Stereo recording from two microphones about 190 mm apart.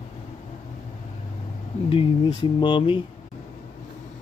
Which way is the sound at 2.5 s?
25° left (ahead or behind).